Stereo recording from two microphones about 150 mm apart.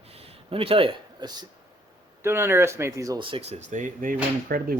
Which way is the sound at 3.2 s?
40° right (ahead or behind).